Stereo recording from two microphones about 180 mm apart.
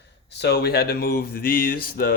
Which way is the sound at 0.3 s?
70° left (ahead or behind).